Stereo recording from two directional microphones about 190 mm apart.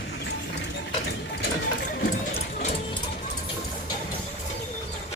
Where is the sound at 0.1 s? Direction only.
65° left (ahead or behind).